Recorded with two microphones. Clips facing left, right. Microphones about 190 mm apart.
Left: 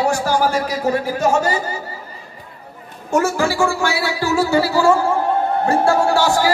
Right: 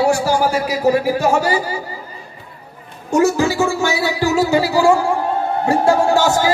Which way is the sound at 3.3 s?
20° right (ahead or behind).